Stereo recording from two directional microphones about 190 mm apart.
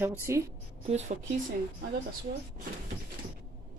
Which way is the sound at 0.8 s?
35° right (ahead or behind).